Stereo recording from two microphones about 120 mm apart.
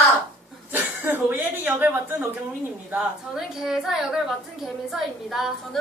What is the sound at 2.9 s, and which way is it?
A woman's voice, 5° right (ahead or behind).